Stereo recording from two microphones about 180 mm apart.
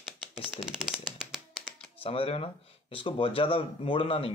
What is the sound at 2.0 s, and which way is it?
Speech, 30° left (ahead or behind).